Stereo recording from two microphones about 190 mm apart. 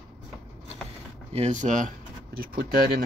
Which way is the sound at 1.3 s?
35° right (ahead or behind).